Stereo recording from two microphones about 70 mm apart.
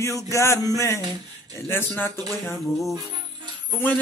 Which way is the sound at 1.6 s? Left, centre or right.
Left.